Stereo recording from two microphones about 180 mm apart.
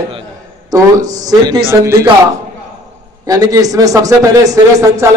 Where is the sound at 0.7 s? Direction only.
20° right (ahead or behind).